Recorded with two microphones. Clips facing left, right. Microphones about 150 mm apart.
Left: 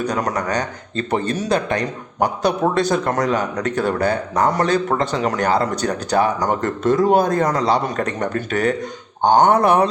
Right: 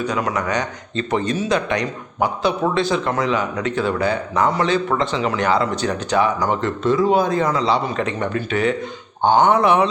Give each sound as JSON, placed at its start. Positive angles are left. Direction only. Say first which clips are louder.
{"t": 0.0, "sound": "speech", "louder": "even", "side_deg": 40}